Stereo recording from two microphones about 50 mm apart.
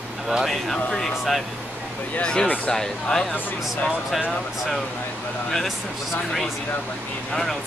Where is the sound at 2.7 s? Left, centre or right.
Centre.